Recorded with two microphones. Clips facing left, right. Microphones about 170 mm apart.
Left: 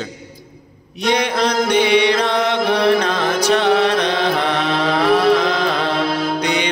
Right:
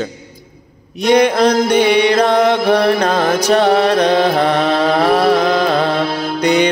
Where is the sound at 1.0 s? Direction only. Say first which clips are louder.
Right 7 dB; 45° right (ahead or behind).